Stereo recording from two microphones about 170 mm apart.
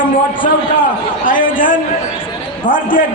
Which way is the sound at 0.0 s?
55° left (ahead or behind).